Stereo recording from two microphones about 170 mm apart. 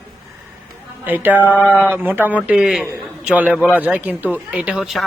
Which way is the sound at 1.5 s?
10° left (ahead or behind).